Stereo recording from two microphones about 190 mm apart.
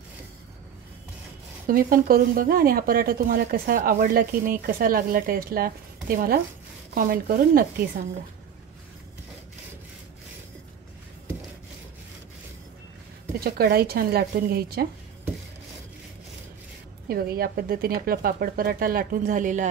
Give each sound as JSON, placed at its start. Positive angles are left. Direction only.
{"t": 1.7, "sound": "speech", "side_deg": -50}
{"t": 13.4, "sound": "speech", "side_deg": -55}
{"t": 17.1, "sound": "speech", "side_deg": -50}